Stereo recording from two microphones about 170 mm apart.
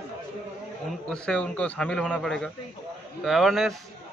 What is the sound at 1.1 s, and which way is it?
A man's voice, 5° left (ahead or behind).